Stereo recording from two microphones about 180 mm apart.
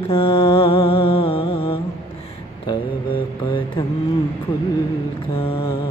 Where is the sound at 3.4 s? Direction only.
30° left (ahead or behind).